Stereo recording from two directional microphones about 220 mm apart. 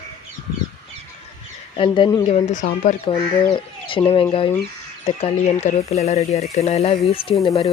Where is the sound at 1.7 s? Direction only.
20° left (ahead or behind).